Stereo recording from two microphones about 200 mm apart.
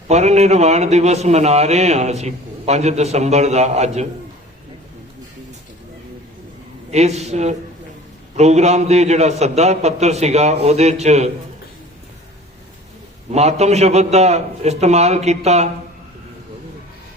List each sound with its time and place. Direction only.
0.1 s a man's voice: 35° right (ahead or behind)
6.9 s a man's voice: 35° right (ahead or behind)
13.3 s a man's voice: 35° right (ahead or behind)